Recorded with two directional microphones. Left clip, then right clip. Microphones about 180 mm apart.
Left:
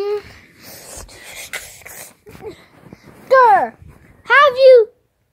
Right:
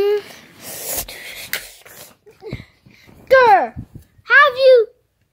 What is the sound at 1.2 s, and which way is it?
Shuffle, 5° left (ahead or behind).